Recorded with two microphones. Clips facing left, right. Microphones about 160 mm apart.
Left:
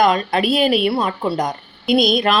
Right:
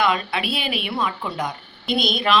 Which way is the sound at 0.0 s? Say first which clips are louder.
Left 6 dB; 40° left (ahead or behind).